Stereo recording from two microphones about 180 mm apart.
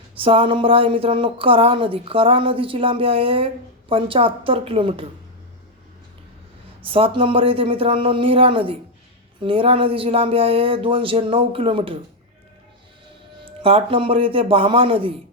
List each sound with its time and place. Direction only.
0.2 s speech: 30° right (ahead or behind)
6.8 s speech: 30° right (ahead or behind)
13.4 s speech: 30° right (ahead or behind)